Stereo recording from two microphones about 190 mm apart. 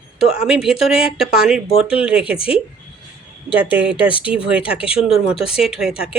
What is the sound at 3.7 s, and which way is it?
Speech, 5° right (ahead or behind).